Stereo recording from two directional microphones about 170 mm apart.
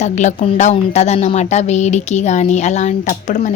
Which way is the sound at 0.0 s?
45° left (ahead or behind).